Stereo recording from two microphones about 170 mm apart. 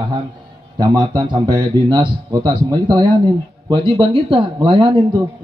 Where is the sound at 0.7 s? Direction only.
20° right (ahead or behind).